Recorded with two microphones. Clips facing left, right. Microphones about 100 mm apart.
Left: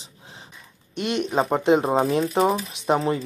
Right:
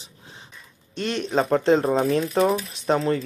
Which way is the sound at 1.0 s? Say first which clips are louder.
Even; 15° left (ahead or behind).